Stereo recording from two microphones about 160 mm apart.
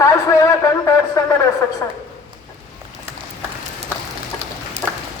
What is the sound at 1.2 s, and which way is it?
Speech, 15° left (ahead or behind).